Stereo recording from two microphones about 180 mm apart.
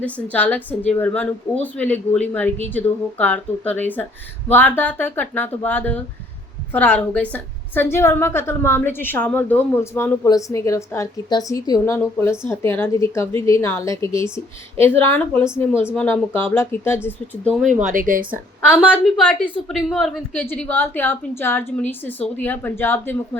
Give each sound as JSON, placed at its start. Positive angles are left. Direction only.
{"t": 0.0, "sound": "a woman's voice", "side_deg": 10}
{"t": 17.7, "sound": "speech", "side_deg": -45}
{"t": 18.7, "sound": "a woman's voice", "side_deg": -5}